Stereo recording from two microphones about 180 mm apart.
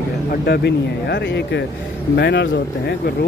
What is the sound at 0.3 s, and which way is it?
Speech, 65° left (ahead or behind).